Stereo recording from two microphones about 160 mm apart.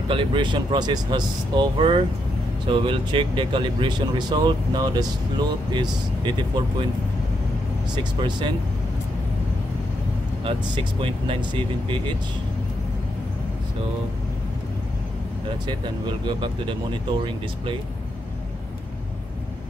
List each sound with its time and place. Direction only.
0.1 s speech: 30° right (ahead or behind)
7.9 s speech: 30° right (ahead or behind)
10.4 s speech: 30° right (ahead or behind)
15.6 s speech: 30° right (ahead or behind)